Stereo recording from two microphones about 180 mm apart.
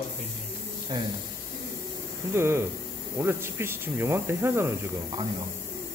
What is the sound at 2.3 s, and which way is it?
Speech, 15° right (ahead or behind).